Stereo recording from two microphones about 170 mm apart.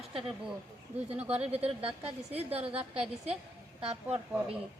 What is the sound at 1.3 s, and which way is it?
A woman's voice, 40° right (ahead or behind).